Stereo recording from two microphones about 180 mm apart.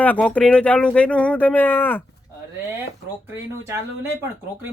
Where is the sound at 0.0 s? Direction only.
10° left (ahead or behind).